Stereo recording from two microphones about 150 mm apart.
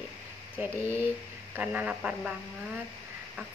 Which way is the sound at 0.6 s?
15° right (ahead or behind).